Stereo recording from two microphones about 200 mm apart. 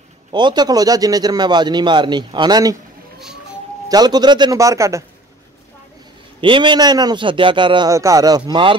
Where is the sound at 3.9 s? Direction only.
20° right (ahead or behind).